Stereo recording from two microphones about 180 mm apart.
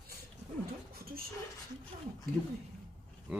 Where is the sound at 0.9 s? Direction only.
55° right (ahead or behind).